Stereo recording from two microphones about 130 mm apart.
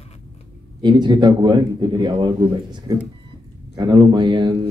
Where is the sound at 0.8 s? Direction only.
35° right (ahead or behind).